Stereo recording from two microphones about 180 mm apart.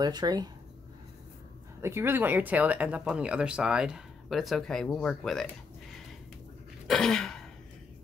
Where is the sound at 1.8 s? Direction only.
15° right (ahead or behind); by 5.4 s 5° left (ahead or behind).